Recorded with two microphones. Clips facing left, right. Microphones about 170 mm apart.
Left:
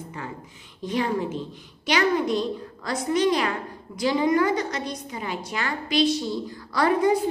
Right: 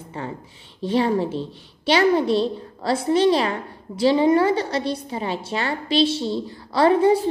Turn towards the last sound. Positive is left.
turn(degrees=-30)  # may be behind; listen again after turning